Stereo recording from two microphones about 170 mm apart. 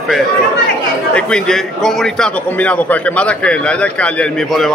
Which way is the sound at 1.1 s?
5° left (ahead or behind).